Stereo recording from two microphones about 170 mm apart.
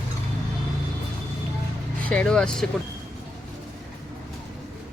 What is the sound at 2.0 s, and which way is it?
Speech, 5° left (ahead or behind).